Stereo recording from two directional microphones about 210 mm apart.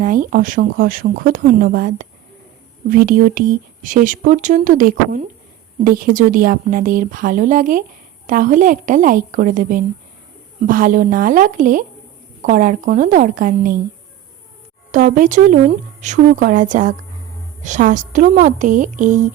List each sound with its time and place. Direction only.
0.0 s speech: 40° right (ahead or behind)
14.9 s speech: 40° right (ahead or behind)